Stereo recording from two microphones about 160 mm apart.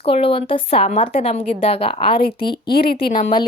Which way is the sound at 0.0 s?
35° left (ahead or behind).